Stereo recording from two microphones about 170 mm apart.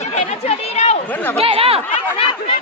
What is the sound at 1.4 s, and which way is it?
Speech, 35° right (ahead or behind).